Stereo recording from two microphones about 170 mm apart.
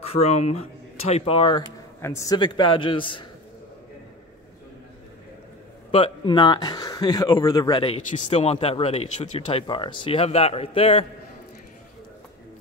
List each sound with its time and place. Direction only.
0.0 s speech: 35° left (ahead or behind)
2.0 s speech: 15° left (ahead or behind)
5.9 s speech: 35° left (ahead or behind)
8.1 s speech: 40° left (ahead or behind)